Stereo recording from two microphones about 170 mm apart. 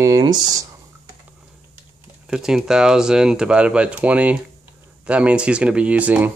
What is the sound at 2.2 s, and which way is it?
Speech, 5° right (ahead or behind).